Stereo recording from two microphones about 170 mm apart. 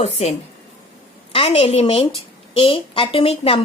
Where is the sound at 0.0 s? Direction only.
40° left (ahead or behind).